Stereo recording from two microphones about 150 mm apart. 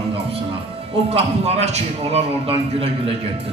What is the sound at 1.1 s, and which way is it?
A man's voice, 45° right (ahead or behind).